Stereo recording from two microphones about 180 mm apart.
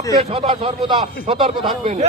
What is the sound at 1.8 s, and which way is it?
Speech, 40° right (ahead or behind).